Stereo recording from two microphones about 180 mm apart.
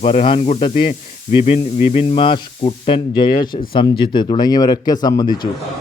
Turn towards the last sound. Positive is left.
turn(degrees=25)  # may be behind; listen again after turning